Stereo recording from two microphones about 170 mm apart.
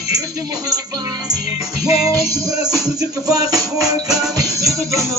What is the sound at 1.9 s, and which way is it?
Music, 20° right (ahead or behind).